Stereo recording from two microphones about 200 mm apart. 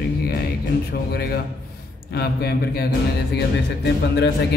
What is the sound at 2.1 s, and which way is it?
Speech, 50° left (ahead or behind).